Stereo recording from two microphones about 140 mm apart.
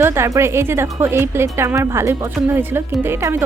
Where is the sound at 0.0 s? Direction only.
20° right (ahead or behind).